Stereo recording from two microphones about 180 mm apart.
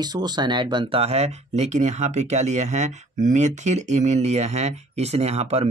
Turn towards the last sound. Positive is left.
turn(degrees=-35)  # may be behind; listen again after turning